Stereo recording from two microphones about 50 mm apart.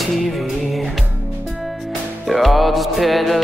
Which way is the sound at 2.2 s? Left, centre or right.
Centre.